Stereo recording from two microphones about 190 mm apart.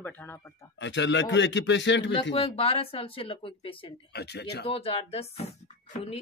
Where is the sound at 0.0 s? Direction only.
10° left (ahead or behind).